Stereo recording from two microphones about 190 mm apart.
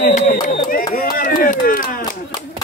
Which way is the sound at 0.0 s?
45° left (ahead or behind).